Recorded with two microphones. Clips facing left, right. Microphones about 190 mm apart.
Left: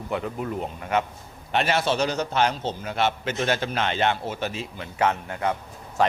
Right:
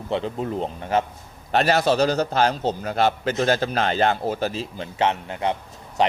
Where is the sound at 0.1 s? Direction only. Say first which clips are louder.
Right 3 dB; 30° right (ahead or behind).